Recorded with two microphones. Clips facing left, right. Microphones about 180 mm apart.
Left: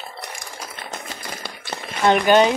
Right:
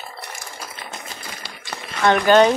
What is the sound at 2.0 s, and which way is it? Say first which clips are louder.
Speech: right 1 dB; 15° left (ahead or behind).